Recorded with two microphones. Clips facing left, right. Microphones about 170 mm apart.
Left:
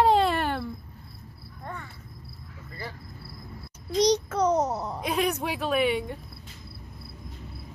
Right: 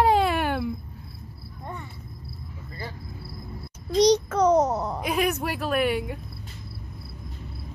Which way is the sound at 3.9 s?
90° right.